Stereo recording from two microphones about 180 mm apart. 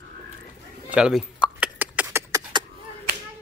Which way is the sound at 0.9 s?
5° right (ahead or behind).